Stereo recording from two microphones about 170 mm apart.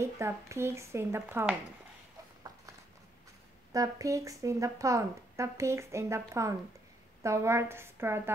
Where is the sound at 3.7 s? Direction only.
20° right (ahead or behind).